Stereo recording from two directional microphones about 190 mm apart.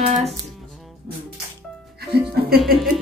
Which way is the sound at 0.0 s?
35° right (ahead or behind).